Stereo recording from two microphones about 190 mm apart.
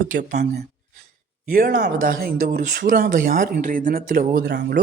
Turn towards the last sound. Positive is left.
turn(degrees=-60)  # may be behind; listen again after turning